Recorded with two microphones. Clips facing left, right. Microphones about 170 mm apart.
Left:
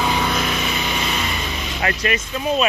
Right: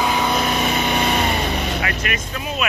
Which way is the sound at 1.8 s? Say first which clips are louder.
Left 3 dB; 35° left (ahead or behind).